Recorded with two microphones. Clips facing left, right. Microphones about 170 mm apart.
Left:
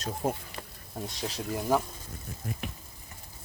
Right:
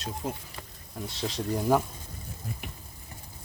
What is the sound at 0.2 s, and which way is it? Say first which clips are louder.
Speech: left 5 dB; 50° left (ahead or behind).